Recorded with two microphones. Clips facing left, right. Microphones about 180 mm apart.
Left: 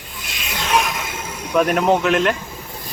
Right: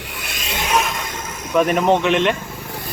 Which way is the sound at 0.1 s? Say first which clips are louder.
Right 4 dB; 65° right (ahead or behind).